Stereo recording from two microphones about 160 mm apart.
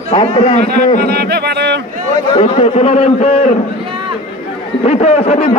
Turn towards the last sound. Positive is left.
turn(degrees=45)  # may be behind; listen again after turning